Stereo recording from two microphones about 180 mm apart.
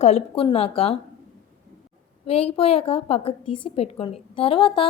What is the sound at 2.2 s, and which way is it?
A woman's voice, 35° left (ahead or behind).